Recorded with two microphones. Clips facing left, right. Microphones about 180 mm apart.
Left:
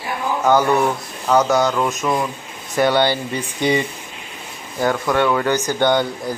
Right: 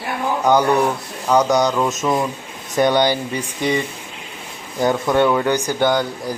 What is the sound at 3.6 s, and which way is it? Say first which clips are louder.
Speech: left 2 dB; centre (ahead or behind).